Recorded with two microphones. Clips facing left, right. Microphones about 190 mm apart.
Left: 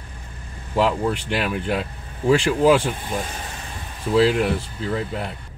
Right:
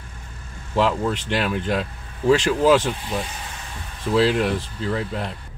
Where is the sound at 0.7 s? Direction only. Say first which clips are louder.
Even; 10° left (ahead or behind).